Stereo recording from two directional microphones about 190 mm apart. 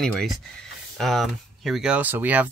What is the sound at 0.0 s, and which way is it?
Speech, 5° left (ahead or behind).